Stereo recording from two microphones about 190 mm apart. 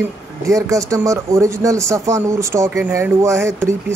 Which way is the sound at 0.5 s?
15° right (ahead or behind).